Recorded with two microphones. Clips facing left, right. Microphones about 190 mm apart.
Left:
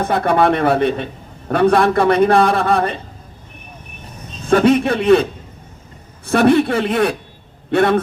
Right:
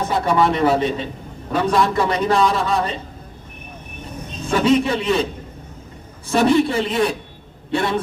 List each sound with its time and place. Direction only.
0.0 s a man's voice: 55° left (ahead or behind)
4.4 s a man's voice: 60° left (ahead or behind)